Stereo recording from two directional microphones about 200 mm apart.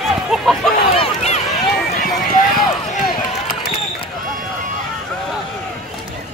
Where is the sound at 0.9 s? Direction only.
30° left (ahead or behind).